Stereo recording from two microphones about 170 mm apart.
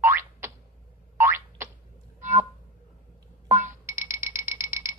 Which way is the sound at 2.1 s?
15° right (ahead or behind).